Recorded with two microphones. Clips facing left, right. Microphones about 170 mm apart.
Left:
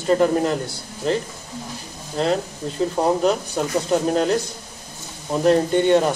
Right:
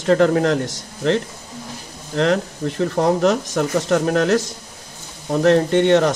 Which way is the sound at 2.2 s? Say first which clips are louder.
Right 3 dB; 75° right (ahead or behind).